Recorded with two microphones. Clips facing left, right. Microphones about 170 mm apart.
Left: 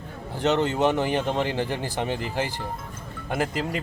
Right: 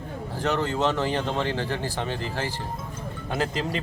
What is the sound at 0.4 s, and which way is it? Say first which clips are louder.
A man's voice: left 3 dB; 20° left (ahead or behind).